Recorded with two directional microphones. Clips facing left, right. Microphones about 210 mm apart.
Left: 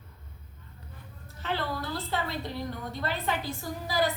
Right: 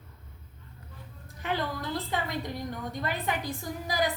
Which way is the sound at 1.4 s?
15° right (ahead or behind).